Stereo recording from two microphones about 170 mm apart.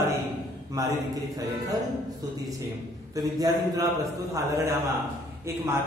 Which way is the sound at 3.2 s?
20° right (ahead or behind).